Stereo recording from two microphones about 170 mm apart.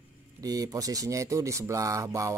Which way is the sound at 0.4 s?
20° right (ahead or behind).